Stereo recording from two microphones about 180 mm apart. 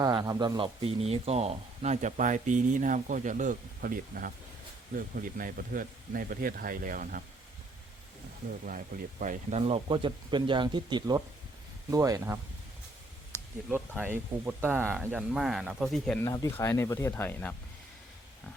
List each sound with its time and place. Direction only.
0.0 s speech: 20° right (ahead or behind); by 7.3 s 50° right (ahead or behind)
8.6 s speech: 50° right (ahead or behind); by 12.4 s 15° right (ahead or behind)
13.7 s speech: 10° right (ahead or behind)
16.2 s speech: 20° left (ahead or behind)